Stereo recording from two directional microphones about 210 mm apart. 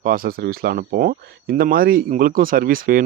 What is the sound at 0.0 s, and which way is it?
Speech, 45° right (ahead or behind).